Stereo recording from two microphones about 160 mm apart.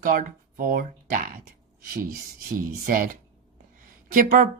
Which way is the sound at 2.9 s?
60° right (ahead or behind).